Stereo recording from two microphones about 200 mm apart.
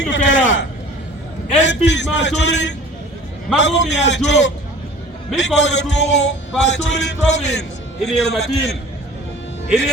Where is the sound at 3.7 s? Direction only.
65° left (ahead or behind).